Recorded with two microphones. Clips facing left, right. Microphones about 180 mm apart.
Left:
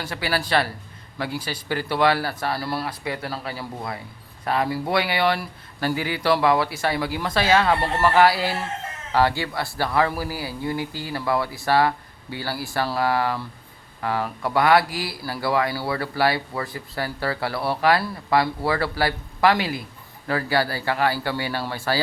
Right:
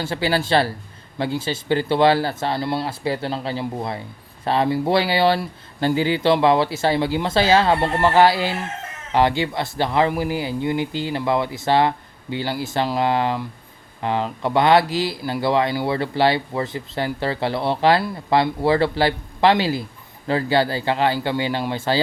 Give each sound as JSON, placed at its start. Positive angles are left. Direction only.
{"t": 0.0, "sound": "speech", "side_deg": -25}